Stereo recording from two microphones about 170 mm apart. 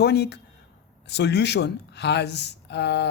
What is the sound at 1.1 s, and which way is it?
Speech, 90° left.